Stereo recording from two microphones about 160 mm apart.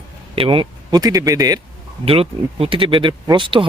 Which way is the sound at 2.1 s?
35° right (ahead or behind).